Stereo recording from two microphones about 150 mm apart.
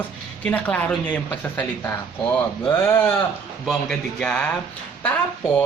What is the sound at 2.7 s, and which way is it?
Speech, 15° left (ahead or behind).